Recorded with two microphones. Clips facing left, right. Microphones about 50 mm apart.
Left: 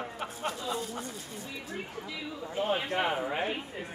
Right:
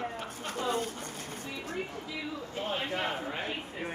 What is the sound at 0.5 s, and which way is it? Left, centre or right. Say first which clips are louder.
Speech: right 3 dB; right.